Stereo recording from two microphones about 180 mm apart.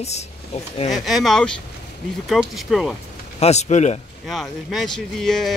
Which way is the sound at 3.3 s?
35° left (ahead or behind).